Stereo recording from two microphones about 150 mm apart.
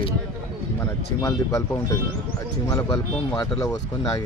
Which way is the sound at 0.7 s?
20° left (ahead or behind).